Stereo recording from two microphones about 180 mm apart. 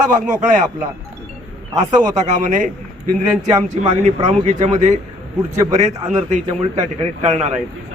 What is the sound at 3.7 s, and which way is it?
A man's voice, 40° right (ahead or behind).